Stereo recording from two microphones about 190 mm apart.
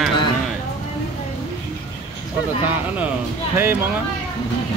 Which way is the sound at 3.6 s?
10° right (ahead or behind).